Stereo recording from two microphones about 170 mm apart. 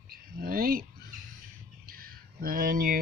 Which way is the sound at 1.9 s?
60° right (ahead or behind).